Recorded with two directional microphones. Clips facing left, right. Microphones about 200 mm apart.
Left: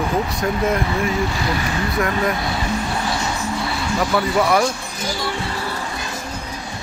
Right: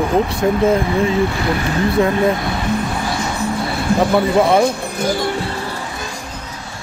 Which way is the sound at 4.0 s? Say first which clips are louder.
Right 5 dB; 30° right (ahead or behind).